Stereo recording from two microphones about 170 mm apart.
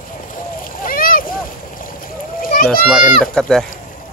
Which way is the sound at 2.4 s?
55° left (ahead or behind).